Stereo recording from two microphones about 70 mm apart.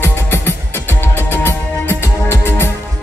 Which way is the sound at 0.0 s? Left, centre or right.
Left.